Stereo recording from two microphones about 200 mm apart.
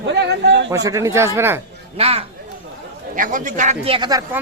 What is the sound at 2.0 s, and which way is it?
Speech, 30° right (ahead or behind).